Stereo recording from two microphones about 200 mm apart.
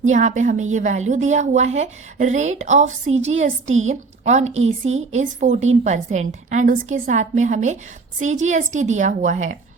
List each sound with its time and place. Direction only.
0.1 s a woman's voice: 35° right (ahead or behind)